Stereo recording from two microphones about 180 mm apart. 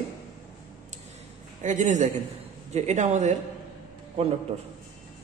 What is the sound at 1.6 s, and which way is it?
A man's voice, 45° right (ahead or behind).